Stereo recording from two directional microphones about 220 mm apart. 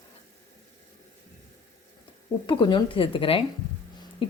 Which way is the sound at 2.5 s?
20° left (ahead or behind).